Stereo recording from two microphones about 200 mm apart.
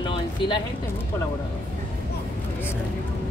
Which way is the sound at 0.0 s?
25° left (ahead or behind).